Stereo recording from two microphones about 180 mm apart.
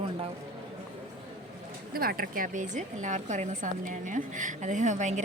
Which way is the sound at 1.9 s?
55° right (ahead or behind).